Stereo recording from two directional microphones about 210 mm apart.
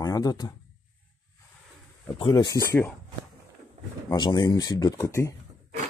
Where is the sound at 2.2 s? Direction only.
20° left (ahead or behind).